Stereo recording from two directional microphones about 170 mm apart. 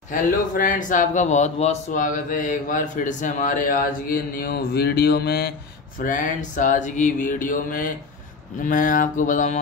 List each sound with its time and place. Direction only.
0.1 s speech: 50° left (ahead or behind); by 5.5 s 70° left (ahead or behind)
5.9 s speech: 50° left (ahead or behind)